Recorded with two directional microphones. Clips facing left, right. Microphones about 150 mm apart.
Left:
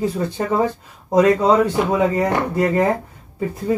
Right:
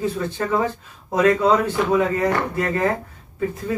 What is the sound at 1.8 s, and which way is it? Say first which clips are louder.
Speech: left 1 dB; 25° left (ahead or behind).